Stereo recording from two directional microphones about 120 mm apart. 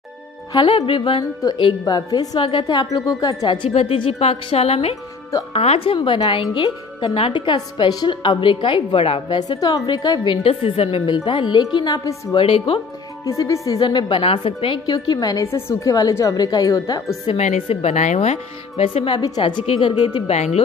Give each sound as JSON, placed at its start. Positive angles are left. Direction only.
{"t": 0.5, "sound": "a woman's voice", "side_deg": 45}
{"t": 3.7, "sound": "a woman's voice", "side_deg": 55}
{"t": 5.9, "sound": "a woman's voice", "side_deg": 40}
{"t": 9.5, "sound": "a woman's voice", "side_deg": 30}
{"t": 10.3, "sound": "a woman's voice", "side_deg": 55}
{"t": 11.1, "sound": "a woman's voice", "side_deg": 40}
{"t": 12.4, "sound": "a woman's voice", "side_deg": 50}
{"t": 13.2, "sound": "a woman's voice", "side_deg": 25}
{"t": 14.9, "sound": "a woman's voice", "side_deg": 30}
{"t": 17.4, "sound": "speech", "side_deg": 70}
{"t": 19.1, "sound": "a woman's voice", "side_deg": 35}
{"t": 19.6, "sound": "speech", "side_deg": 50}
{"t": 20.3, "sound": "speech", "side_deg": 65}